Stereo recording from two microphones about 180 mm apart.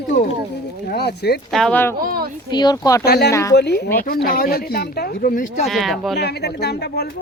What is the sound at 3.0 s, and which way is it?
Speech, 60° left (ahead or behind).